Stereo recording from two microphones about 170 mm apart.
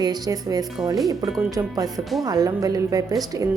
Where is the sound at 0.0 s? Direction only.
25° right (ahead or behind).